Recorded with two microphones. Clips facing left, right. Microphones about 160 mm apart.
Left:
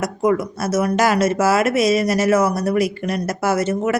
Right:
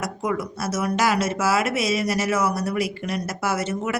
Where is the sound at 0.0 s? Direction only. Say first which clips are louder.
Left 7 dB; 45° left (ahead or behind).